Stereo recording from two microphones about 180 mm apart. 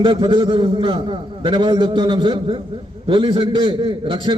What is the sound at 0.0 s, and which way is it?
A man's voice, 25° right (ahead or behind).